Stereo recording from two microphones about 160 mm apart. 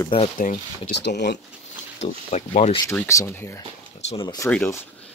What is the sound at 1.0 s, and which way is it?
Speech, 90° left.